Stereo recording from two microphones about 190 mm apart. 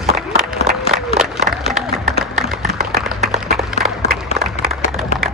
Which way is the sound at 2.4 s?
Centre (ahead or behind).